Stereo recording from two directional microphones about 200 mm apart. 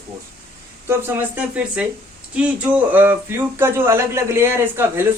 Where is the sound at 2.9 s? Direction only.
10° right (ahead or behind).